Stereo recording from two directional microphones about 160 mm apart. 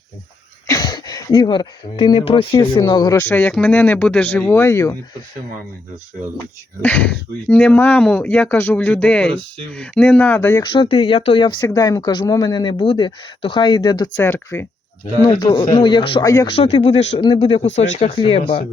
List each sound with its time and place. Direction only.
0.7 s speech: 25° left (ahead or behind)
6.8 s speech: 10° left (ahead or behind)
10.6 s speech: 30° left (ahead or behind)
14.3 s speech: 15° left (ahead or behind)
15.2 s speech: 25° left (ahead or behind)
16.5 s speech: 35° left (ahead or behind)